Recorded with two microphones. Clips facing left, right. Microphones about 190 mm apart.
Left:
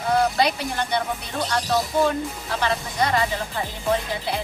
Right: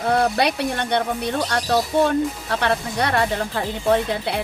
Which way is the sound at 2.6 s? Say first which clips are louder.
Right 1 dB; 65° right (ahead or behind).